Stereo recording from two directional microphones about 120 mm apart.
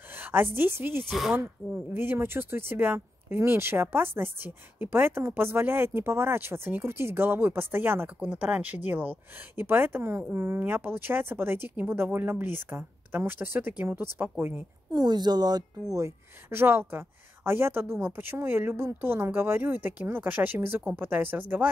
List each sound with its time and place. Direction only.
0.2 s a sound: 15° right (ahead or behind)
0.6 s speech: 20° right (ahead or behind)
14.9 s speech: 35° right (ahead or behind)
15.9 s speech: 20° right (ahead or behind)